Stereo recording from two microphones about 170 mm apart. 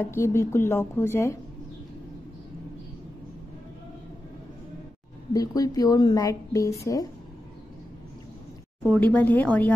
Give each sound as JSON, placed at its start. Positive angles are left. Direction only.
{"t": 0.0, "sound": "speech", "side_deg": 15}
{"t": 5.3, "sound": "speech", "side_deg": 20}
{"t": 8.8, "sound": "speech", "side_deg": 5}